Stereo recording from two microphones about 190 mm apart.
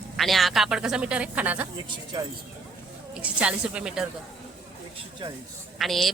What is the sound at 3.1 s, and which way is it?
Speech, 5° right (ahead or behind).